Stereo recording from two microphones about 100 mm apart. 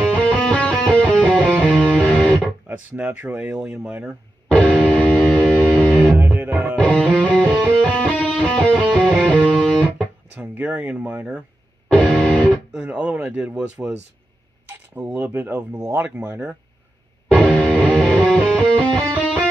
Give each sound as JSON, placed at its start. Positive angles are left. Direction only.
{"t": 0.1, "sound": "music", "side_deg": 5}
{"t": 3.0, "sound": "speech", "side_deg": -20}
{"t": 4.5, "sound": "music", "side_deg": 10}
{"t": 6.0, "sound": "music", "side_deg": -20}
{"t": 6.8, "sound": "music", "side_deg": 10}
{"t": 10.3, "sound": "speech", "side_deg": -15}
{"t": 11.9, "sound": "music", "side_deg": 5}
{"t": 12.8, "sound": "speech", "side_deg": -15}
{"t": 17.3, "sound": "music", "side_deg": 5}